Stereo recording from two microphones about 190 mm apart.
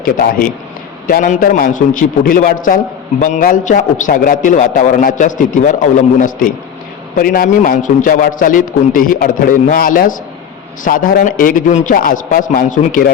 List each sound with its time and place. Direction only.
0.0 s a man's voice: 50° left (ahead or behind)